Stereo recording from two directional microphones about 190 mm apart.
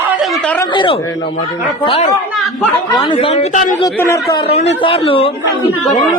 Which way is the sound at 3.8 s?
15° left (ahead or behind).